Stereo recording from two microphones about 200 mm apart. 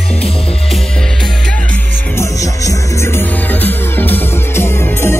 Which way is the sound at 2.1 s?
15° left (ahead or behind).